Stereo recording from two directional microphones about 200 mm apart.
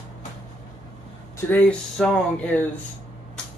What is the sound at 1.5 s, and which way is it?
Speech, 5° left (ahead or behind).